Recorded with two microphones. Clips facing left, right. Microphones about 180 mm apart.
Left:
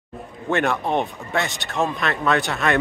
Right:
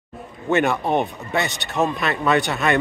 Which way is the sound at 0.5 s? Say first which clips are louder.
Right 2 dB; 5° right (ahead or behind).